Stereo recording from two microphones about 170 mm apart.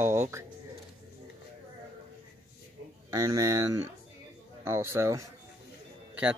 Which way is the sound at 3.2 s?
20° right (ahead or behind).